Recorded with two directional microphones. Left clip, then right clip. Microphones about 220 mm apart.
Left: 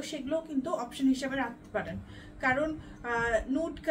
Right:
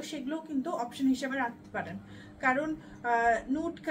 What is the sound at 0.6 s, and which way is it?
A woman's voice, 15° left (ahead or behind).